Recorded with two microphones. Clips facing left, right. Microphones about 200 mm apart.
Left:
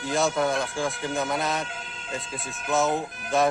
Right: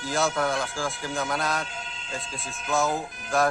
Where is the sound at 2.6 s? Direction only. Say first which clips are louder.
Left 2 dB; centre (ahead or behind).